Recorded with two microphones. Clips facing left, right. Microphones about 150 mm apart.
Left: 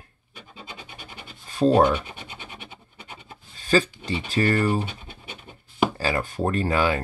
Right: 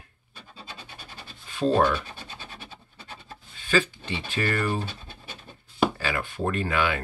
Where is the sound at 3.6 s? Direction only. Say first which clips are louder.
Left 3 dB; 40° left (ahead or behind).